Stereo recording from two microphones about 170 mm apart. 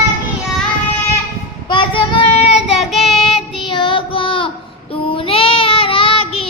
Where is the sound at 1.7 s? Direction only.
30° left (ahead or behind).